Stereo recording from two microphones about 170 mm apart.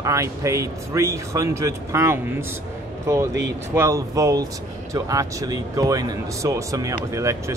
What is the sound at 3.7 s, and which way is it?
A man's voice, 20° right (ahead or behind).